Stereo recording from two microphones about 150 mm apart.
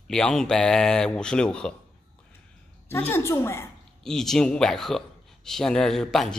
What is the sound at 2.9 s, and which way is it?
Speech, 15° left (ahead or behind).